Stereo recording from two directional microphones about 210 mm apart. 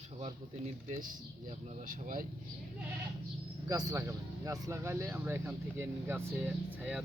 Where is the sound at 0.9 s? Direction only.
35° right (ahead or behind).